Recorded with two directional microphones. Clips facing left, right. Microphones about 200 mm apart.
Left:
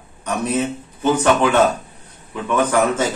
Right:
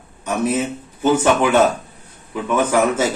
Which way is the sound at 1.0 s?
10° right (ahead or behind).